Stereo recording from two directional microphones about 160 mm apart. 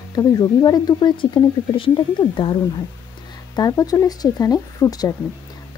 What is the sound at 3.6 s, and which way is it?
Speech, 25° left (ahead or behind).